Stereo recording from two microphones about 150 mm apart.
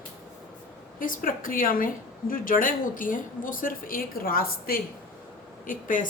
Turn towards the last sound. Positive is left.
turn(degrees=60)  # may be behind; listen again after turning